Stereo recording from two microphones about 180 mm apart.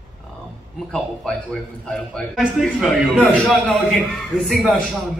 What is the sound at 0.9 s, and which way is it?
A man's voice, 5° left (ahead or behind).